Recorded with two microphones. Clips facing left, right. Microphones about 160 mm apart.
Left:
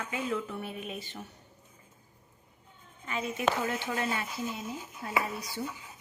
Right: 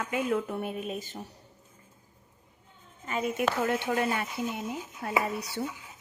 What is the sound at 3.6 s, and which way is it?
Speech, 55° right (ahead or behind).